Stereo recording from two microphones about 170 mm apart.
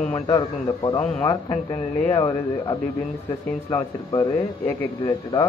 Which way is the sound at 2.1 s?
20° left (ahead or behind).